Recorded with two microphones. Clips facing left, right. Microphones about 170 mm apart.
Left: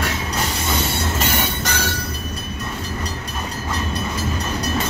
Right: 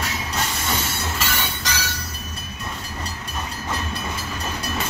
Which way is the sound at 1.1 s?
55° left (ahead or behind).